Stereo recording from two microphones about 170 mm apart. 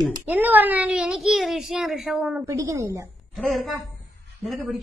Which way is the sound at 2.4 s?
20° right (ahead or behind).